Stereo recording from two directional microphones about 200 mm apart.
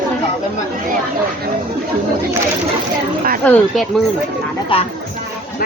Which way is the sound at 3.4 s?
Centre (ahead or behind).